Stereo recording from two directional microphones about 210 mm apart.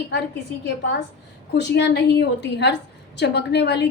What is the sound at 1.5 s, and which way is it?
A woman's voice, 55° left (ahead or behind).